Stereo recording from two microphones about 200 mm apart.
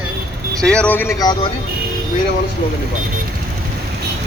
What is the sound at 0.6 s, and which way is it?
Speech, 5° left (ahead or behind).